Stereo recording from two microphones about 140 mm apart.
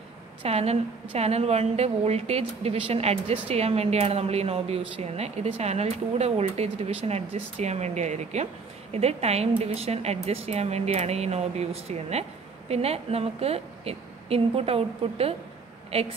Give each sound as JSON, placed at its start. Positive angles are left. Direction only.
{"t": 0.4, "sound": "speech", "side_deg": -50}